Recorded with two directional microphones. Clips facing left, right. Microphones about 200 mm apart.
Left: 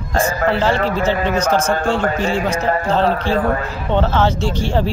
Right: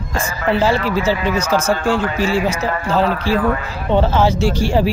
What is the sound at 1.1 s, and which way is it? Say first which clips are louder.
Speech: left 1 dB; 10° right (ahead or behind).